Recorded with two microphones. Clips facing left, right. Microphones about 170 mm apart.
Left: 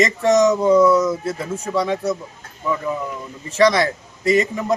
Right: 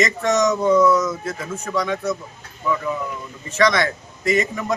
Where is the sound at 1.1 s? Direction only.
30° left (ahead or behind).